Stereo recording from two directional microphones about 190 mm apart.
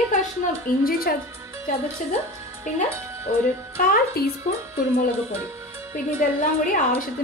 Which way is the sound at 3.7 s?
50° left (ahead or behind).